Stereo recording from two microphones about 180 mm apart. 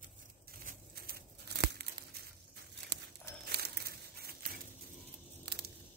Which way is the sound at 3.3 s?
65° right (ahead or behind).